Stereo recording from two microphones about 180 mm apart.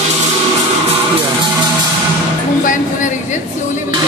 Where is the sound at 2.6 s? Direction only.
45° left (ahead or behind).